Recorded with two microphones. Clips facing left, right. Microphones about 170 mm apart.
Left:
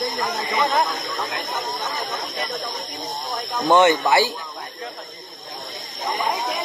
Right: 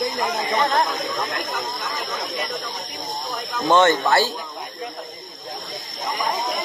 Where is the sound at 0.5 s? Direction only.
10° left (ahead or behind).